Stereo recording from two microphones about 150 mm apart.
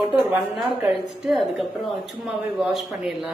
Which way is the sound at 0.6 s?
Centre (ahead or behind).